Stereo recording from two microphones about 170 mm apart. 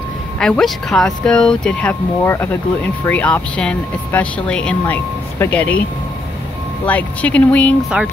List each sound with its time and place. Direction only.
0.4 s speech: 5° left (ahead or behind)
6.9 s speech: 10° left (ahead or behind)